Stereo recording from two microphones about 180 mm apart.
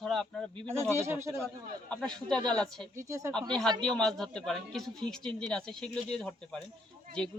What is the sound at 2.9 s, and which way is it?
Speech, 15° right (ahead or behind).